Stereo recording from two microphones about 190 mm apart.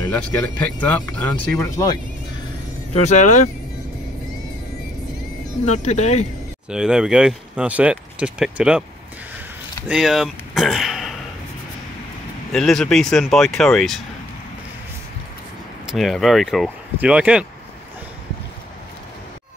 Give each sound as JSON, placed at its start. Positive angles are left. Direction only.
{"t": 0.1, "sound": "speech", "side_deg": 10}
{"t": 2.9, "sound": "speech", "side_deg": 35}
{"t": 5.7, "sound": "speech", "side_deg": 35}
{"t": 6.7, "sound": "speech", "side_deg": -5}
{"t": 9.8, "sound": "speech", "side_deg": 0}
{"t": 12.5, "sound": "speech", "side_deg": 0}
{"t": 15.9, "sound": "speech", "side_deg": 0}